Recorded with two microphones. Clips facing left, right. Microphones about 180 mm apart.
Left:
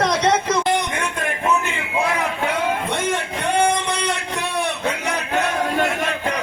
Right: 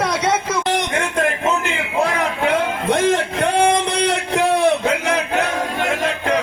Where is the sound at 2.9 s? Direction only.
90° right.